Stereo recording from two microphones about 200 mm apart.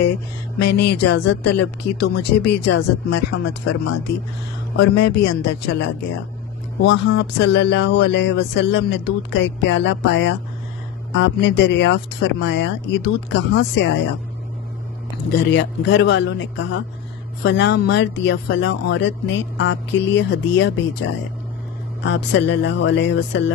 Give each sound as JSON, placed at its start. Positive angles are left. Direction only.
{"t": 0.7, "sound": "speech", "side_deg": 55}
{"t": 4.7, "sound": "speech", "side_deg": 60}
{"t": 6.8, "sound": "speech", "side_deg": 65}
{"t": 15.3, "sound": "speech", "side_deg": 60}